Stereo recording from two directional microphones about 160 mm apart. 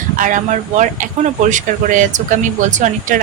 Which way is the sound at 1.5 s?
55° right (ahead or behind).